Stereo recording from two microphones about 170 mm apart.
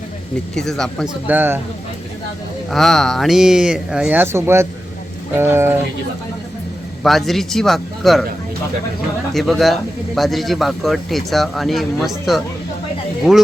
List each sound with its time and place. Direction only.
0.5 s speech: centre (ahead or behind)
1.3 s speech: 10° right (ahead or behind)
2.6 s speech: centre (ahead or behind); by 5.7 s 15° right (ahead or behind)
7.0 s speech: centre (ahead or behind)
9.3 s speech: centre (ahead or behind)